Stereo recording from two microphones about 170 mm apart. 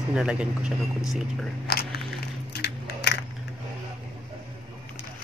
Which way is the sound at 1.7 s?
70° left (ahead or behind).